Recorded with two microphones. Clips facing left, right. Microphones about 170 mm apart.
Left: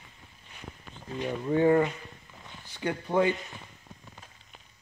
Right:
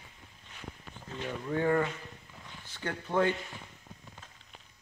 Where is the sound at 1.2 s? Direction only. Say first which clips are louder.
Left 7 dB; 20° left (ahead or behind).